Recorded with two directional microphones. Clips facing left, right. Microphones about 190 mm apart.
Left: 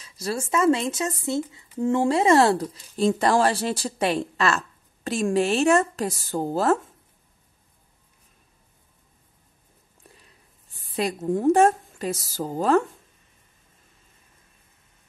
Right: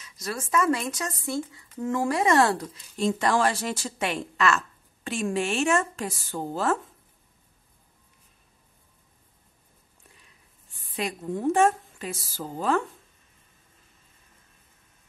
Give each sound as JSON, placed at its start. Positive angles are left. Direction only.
{"t": 0.0, "sound": "speech", "side_deg": 30}
{"t": 11.0, "sound": "speech", "side_deg": 40}